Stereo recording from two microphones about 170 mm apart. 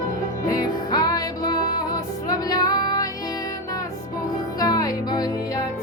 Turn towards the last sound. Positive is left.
turn(degrees=20)  # may be behind; listen again after turning